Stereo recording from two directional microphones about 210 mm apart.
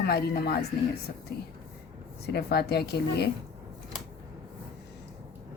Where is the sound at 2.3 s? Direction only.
50° left (ahead or behind).